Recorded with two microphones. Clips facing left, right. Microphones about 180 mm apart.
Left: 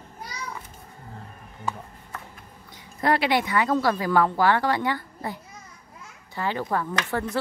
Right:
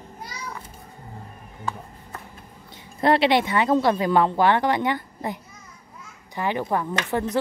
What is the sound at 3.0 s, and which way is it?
Speech, 25° right (ahead or behind).